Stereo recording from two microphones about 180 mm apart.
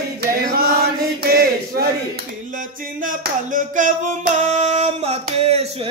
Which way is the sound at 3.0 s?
45° right (ahead or behind).